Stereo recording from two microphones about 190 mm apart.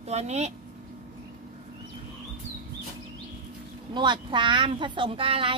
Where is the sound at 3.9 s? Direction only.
25° right (ahead or behind).